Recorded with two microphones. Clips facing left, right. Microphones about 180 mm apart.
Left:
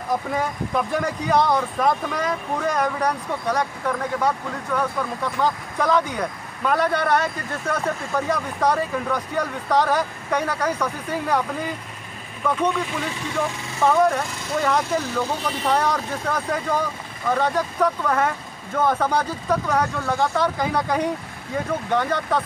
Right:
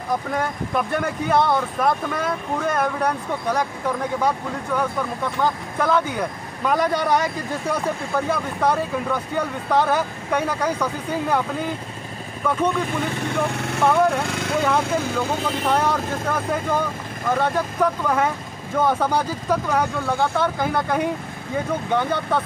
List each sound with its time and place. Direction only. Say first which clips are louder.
0.3 s speech: even; centre (ahead or behind)
12.4 s speech: right 1 dB; 5° right (ahead or behind)
13.1 s speech: right 2 dB; 60° right (ahead or behind)
13.8 s speech: even; 5° right (ahead or behind)
14.2 s speech: right 6 dB; 90° right
14.6 s speech: even; 5° right (ahead or behind)